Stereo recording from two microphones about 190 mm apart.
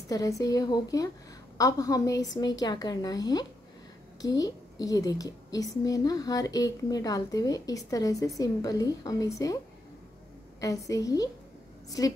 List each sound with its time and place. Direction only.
0.1 s a woman's voice: 20° left (ahead or behind)
10.6 s a woman's voice: 15° left (ahead or behind)